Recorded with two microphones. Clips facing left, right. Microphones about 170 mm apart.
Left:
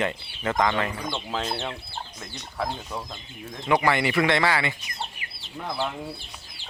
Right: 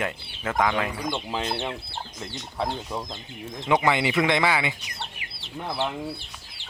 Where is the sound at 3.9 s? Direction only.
20° right (ahead or behind).